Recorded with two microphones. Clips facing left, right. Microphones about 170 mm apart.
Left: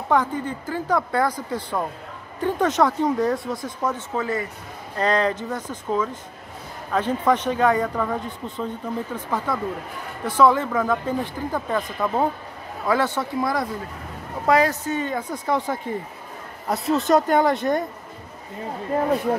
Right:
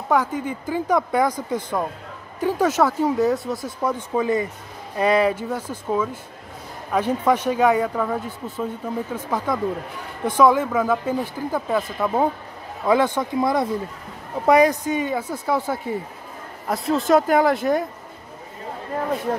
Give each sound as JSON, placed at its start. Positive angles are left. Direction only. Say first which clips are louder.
{"t": 0.1, "sound": "speech", "louder": "right 1 dB", "side_deg": -10}